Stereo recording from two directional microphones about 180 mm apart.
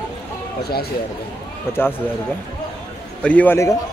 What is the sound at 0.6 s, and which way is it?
Speech, 60° left (ahead or behind).